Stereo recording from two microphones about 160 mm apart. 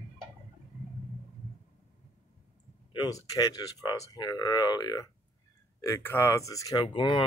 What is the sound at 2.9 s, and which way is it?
Speech, 25° left (ahead or behind).